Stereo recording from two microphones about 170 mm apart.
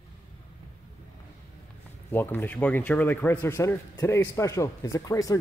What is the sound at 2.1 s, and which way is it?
Speech, 10° left (ahead or behind).